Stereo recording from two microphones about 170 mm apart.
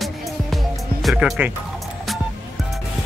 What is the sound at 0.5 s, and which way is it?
Music, centre (ahead or behind).